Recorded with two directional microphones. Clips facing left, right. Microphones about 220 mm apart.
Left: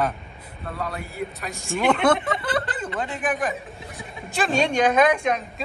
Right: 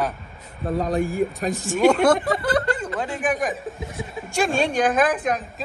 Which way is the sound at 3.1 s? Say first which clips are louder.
Right 2 dB; 5° right (ahead or behind).